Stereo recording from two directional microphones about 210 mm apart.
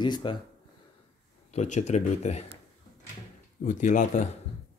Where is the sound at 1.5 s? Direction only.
35° left (ahead or behind).